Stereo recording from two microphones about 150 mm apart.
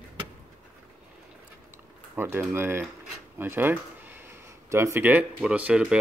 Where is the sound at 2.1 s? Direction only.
15° right (ahead or behind).